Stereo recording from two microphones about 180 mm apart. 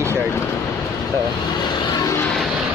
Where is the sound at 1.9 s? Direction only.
20° left (ahead or behind).